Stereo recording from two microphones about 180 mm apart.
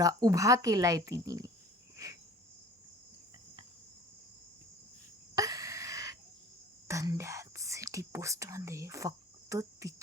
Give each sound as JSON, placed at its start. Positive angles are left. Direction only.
{"t": 0.0, "sound": "speech", "side_deg": -20}
{"t": 5.3, "sound": "a sound", "side_deg": -20}
{"t": 6.8, "sound": "speech", "side_deg": -15}